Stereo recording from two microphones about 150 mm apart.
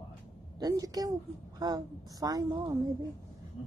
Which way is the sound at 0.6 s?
25° right (ahead or behind).